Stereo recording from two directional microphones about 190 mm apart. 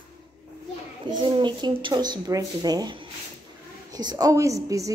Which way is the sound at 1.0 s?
25° right (ahead or behind).